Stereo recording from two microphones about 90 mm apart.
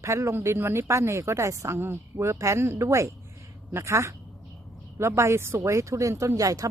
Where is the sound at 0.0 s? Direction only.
30° right (ahead or behind).